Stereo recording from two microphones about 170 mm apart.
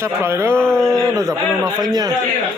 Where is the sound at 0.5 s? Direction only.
5° left (ahead or behind).